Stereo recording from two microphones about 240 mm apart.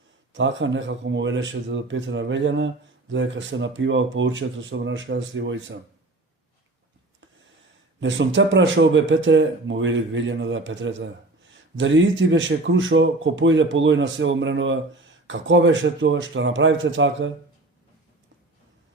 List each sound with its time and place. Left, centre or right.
0.3 s speech: right
8.0 s speech: right